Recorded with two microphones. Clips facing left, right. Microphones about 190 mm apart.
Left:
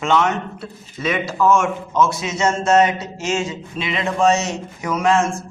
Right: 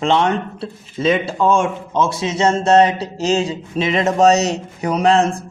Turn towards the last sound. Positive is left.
turn(degrees=-35)  # may be behind; listen again after turning